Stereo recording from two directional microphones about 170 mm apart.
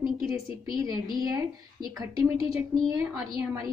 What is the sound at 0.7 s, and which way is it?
A woman's voice, 20° right (ahead or behind).